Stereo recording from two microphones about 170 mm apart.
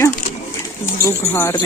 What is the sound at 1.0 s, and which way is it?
Speech, 15° left (ahead or behind).